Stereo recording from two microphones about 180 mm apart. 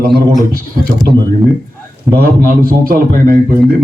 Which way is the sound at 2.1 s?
60° right (ahead or behind).